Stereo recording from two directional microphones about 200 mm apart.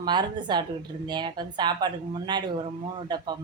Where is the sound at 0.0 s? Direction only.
20° right (ahead or behind).